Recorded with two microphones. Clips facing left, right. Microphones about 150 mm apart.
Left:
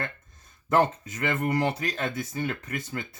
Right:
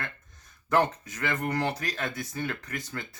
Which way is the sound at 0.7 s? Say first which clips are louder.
Left 2 dB; 25° left (ahead or behind).